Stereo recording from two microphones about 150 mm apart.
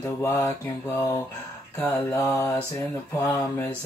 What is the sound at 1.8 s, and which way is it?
Speech, 20° left (ahead or behind).